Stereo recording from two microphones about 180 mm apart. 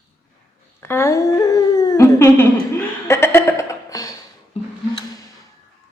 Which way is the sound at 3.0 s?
15° left (ahead or behind).